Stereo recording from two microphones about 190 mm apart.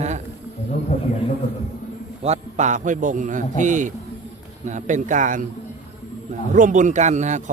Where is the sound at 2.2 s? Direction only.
35° right (ahead or behind).